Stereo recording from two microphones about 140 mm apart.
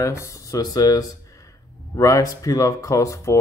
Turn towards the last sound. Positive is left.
turn(degrees=20)  # may be behind; listen again after turning